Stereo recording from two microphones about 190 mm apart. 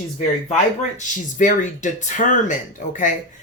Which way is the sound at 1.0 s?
40° left (ahead or behind).